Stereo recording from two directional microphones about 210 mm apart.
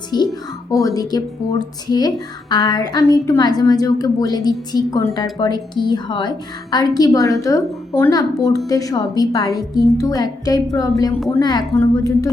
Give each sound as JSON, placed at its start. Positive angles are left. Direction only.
{"t": 0.1, "sound": "a woman's voice", "side_deg": 20}